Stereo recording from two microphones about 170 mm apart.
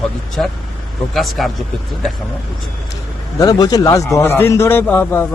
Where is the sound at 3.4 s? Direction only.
20° left (ahead or behind).